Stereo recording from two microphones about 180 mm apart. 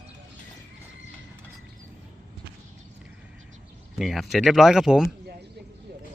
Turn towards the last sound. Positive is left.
turn(degrees=-5)  # may be behind; listen again after turning